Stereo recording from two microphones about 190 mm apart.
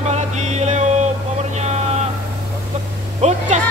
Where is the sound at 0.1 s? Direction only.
35° right (ahead or behind).